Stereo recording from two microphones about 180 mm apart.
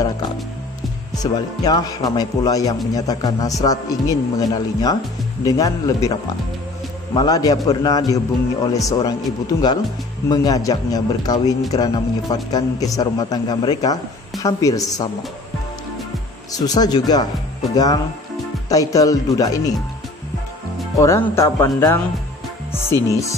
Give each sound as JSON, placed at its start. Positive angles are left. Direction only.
{"t": 1.1, "sound": "speech", "side_deg": 20}
{"t": 7.2, "sound": "speech", "side_deg": 20}
{"t": 16.5, "sound": "speech", "side_deg": 20}
{"t": 18.7, "sound": "speech", "side_deg": 20}
{"t": 21.0, "sound": "speech", "side_deg": 15}